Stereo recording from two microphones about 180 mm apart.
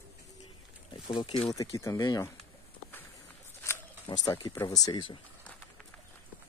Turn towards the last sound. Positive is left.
turn(degrees=25)  # may be behind; listen again after turning